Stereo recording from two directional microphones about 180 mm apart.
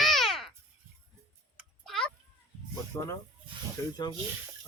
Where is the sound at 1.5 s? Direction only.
Centre (ahead or behind).